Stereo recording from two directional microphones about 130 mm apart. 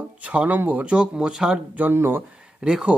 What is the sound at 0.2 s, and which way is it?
Speech, 10° right (ahead or behind).